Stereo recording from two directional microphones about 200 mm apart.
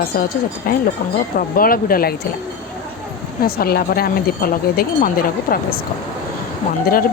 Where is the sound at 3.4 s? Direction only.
50° left (ahead or behind).